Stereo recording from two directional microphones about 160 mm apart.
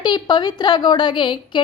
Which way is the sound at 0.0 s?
25° left (ahead or behind).